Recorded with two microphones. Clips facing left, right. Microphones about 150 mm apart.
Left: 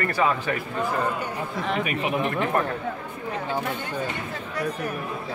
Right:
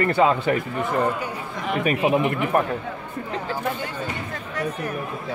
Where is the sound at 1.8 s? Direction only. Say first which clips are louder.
Right 10 dB; 35° right (ahead or behind).